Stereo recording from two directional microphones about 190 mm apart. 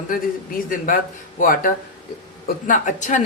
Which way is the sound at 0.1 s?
45° left (ahead or behind).